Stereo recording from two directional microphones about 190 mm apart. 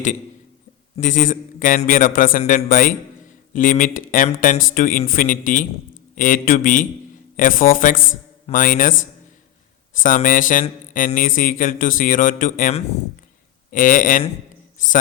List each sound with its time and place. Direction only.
0.9 s speech: 40° left (ahead or behind)